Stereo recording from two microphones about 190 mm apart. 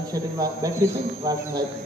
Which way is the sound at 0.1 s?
15° right (ahead or behind).